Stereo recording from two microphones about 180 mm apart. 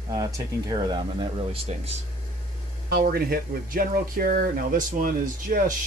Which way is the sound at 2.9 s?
55° right (ahead or behind).